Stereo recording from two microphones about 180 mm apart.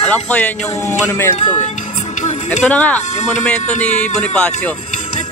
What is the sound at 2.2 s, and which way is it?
Music, 40° left (ahead or behind).